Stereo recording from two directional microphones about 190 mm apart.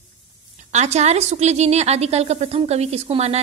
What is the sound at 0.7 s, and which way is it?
A woman's voice, 35° right (ahead or behind).